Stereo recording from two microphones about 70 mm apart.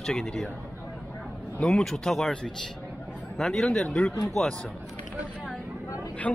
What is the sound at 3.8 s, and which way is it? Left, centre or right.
Speech, centre.